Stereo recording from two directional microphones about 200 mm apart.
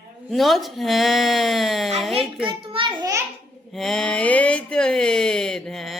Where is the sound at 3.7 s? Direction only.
Centre (ahead or behind).